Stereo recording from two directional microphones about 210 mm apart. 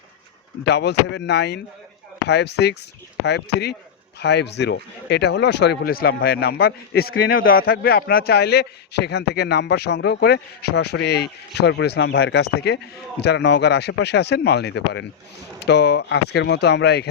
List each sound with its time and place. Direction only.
0.6 s a man's voice: 55° left (ahead or behind)